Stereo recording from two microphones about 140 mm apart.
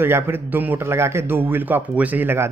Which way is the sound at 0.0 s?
15° right (ahead or behind).